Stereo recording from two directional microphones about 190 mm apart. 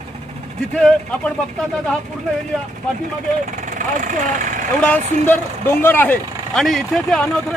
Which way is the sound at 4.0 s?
40° right (ahead or behind).